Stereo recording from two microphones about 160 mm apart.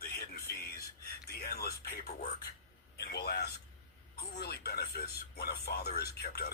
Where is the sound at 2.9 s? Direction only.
90° left.